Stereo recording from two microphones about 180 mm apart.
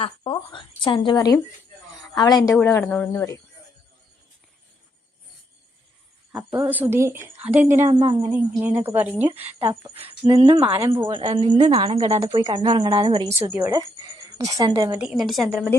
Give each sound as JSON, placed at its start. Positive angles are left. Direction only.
{"t": 0.7, "sound": "a woman's voice", "side_deg": 30}
{"t": 2.5, "sound": "speech", "side_deg": 5}
{"t": 6.3, "sound": "a woman's voice", "side_deg": -10}
{"t": 7.9, "sound": "a woman's voice", "side_deg": -30}
{"t": 8.3, "sound": "a woman's voice", "side_deg": -10}
{"t": 9.4, "sound": "speech", "side_deg": -35}
{"t": 10.7, "sound": "a woman's voice", "side_deg": -15}
{"t": 11.1, "sound": "a woman's voice", "side_deg": -25}
{"t": 13.5, "sound": "a woman's voice", "side_deg": -10}